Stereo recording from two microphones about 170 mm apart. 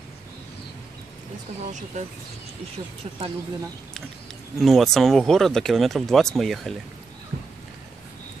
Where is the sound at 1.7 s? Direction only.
45° right (ahead or behind).